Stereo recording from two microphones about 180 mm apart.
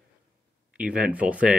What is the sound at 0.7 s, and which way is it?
Speech, 5° right (ahead or behind).